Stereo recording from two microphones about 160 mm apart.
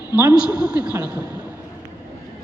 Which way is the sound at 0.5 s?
5° right (ahead or behind).